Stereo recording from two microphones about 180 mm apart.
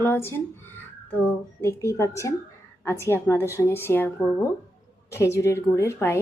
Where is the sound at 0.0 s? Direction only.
15° left (ahead or behind).